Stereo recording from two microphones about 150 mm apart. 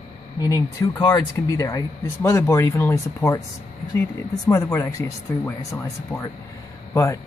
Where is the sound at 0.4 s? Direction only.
25° left (ahead or behind).